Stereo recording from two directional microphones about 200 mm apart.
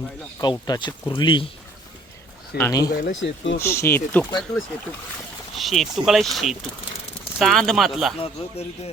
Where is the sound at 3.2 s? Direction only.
65° left (ahead or behind).